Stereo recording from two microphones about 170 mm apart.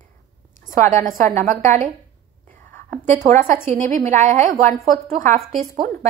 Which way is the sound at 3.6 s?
45° right (ahead or behind).